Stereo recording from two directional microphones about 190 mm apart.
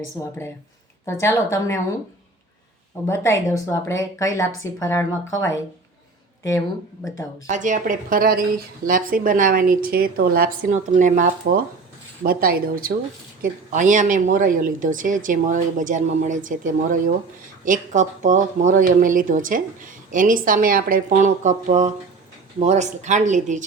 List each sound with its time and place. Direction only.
0.0 s speech: 15° left (ahead or behind)
3.1 s speech: 15° left (ahead or behind)
7.4 s a woman's voice: 40° right (ahead or behind)